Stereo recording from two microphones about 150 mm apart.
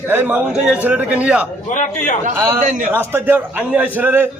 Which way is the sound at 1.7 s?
60° left (ahead or behind).